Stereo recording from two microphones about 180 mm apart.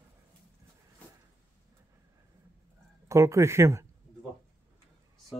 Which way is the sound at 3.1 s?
15° right (ahead or behind).